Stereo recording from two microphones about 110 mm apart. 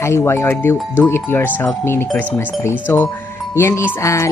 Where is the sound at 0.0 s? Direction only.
25° left (ahead or behind).